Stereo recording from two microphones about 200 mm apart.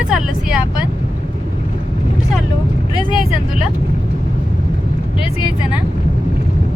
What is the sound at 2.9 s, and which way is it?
Speech, 20° left (ahead or behind).